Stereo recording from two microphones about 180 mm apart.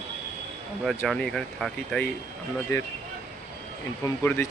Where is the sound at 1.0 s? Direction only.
5° left (ahead or behind).